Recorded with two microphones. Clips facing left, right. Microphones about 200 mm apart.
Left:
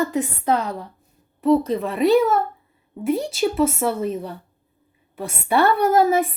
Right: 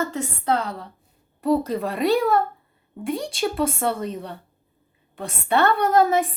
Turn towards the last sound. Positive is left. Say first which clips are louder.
# left 2 dB
turn(degrees=5)  # may be behind; listen again after turning